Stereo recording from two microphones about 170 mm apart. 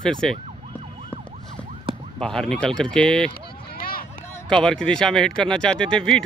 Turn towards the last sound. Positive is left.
turn(degrees=5)  # may be behind; listen again after turning